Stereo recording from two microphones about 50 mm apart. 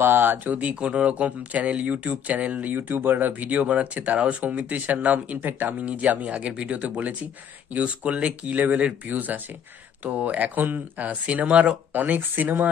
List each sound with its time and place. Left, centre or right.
0.0 s speech: right
0.6 s speech: right
5.4 s speech: right
5.8 s speech: right